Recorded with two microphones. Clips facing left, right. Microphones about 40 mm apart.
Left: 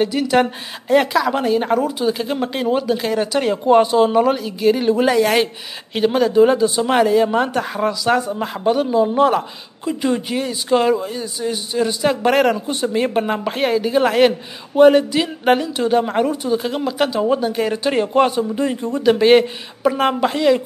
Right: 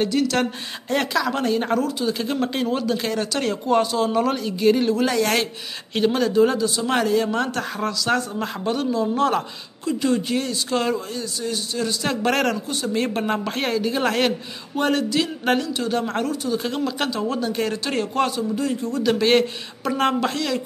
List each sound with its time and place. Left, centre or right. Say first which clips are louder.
0.0 s speech: left 4 dB; centre
4.8 s a man's voice: left 5 dB; centre
19.0 s speech: left 6 dB; centre